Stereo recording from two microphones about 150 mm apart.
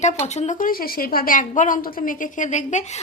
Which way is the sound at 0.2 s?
50° left (ahead or behind).